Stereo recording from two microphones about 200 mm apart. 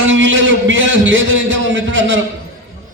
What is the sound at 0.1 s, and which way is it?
A man's voice, 70° right (ahead or behind).